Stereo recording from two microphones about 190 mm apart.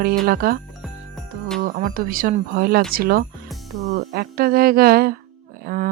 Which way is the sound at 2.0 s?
50° right (ahead or behind).